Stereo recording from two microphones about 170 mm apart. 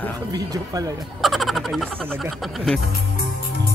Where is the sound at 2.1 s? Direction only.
Centre (ahead or behind).